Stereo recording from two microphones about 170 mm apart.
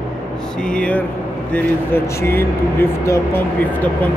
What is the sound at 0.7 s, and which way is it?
Speech, 5° left (ahead or behind).